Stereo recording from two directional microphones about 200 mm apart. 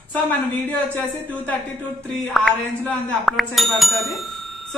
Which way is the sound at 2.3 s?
Centre (ahead or behind).